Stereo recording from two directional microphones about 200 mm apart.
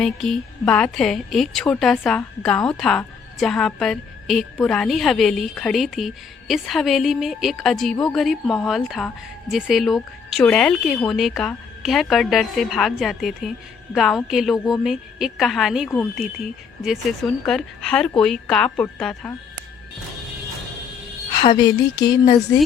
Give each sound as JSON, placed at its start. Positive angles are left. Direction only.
{"t": 0.0, "sound": "a woman's voice", "side_deg": 0}
{"t": 21.3, "sound": "speech", "side_deg": 25}